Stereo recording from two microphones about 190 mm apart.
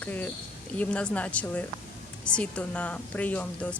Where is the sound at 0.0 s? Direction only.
10° left (ahead or behind).